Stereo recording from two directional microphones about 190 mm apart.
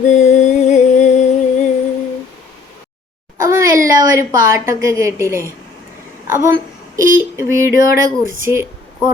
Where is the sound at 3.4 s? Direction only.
15° right (ahead or behind).